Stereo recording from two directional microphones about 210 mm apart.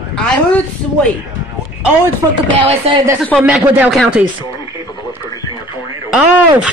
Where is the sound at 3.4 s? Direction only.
5° right (ahead or behind).